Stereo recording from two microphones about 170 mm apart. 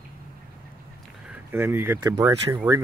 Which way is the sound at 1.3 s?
10° right (ahead or behind).